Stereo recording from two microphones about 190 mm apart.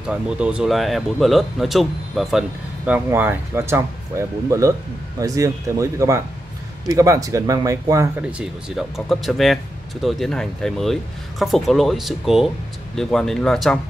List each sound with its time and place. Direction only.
0.0 s speech: 5° right (ahead or behind)